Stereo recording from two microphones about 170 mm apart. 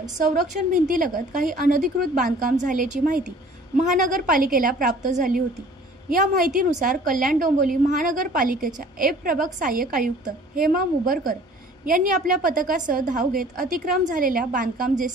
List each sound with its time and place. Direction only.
0.8 s a woman's voice: 55° right (ahead or behind)